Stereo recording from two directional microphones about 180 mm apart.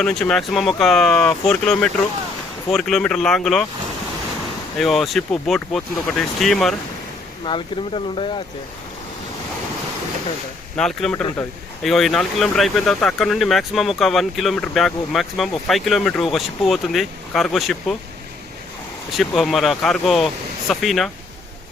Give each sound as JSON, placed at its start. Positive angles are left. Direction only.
{"t": 0.0, "sound": "speech", "side_deg": 5}
{"t": 4.8, "sound": "speech", "side_deg": 0}
{"t": 7.4, "sound": "speech", "side_deg": 30}
{"t": 10.8, "sound": "speech", "side_deg": 5}
{"t": 19.1, "sound": "speech", "side_deg": 0}